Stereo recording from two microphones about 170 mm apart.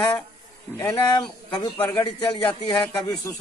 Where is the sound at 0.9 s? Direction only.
25° left (ahead or behind).